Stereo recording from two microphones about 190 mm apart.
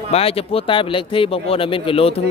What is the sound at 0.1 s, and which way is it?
Speech, 30° left (ahead or behind).